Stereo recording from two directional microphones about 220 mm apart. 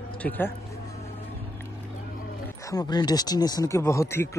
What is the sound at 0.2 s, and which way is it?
Speech, 10° left (ahead or behind).